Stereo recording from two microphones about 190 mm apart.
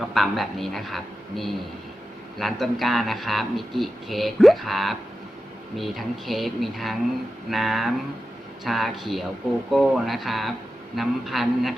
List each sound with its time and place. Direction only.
0.1 s speech: centre (ahead or behind)